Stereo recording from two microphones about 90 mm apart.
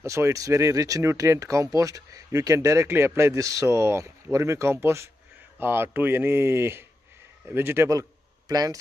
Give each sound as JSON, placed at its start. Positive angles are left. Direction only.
{"t": 0.0, "sound": "a man's voice", "side_deg": -35}